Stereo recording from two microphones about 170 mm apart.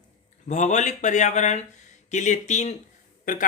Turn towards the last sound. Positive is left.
turn(degrees=50)  # may be behind; listen again after turning